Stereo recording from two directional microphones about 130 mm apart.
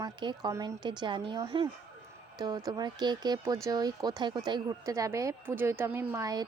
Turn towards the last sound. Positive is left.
turn(degrees=-30)  # may be behind; listen again after turning